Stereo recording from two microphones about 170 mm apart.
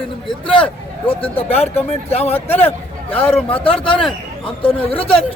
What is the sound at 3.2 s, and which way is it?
Speech, 10° left (ahead or behind).